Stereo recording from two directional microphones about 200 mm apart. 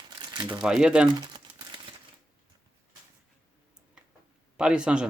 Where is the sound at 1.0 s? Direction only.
20° right (ahead or behind).